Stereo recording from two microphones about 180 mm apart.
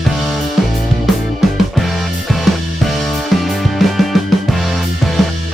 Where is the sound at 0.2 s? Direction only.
Centre (ahead or behind).